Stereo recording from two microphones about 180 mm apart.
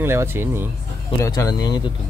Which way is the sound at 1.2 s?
20° left (ahead or behind).